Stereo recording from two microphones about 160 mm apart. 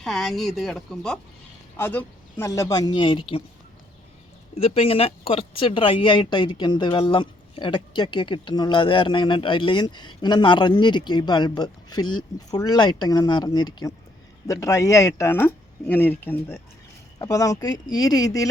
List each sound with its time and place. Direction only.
0.0 s speech: centre (ahead or behind); by 3.4 s 35° left (ahead or behind)
4.5 s speech: 40° left (ahead or behind)